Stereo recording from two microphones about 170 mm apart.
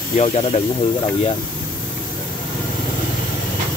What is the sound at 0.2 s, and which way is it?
Speech, 40° left (ahead or behind).